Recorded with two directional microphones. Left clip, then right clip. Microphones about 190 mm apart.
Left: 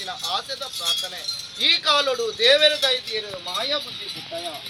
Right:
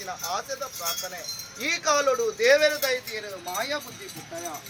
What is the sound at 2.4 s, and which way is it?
Speech, 20° left (ahead or behind).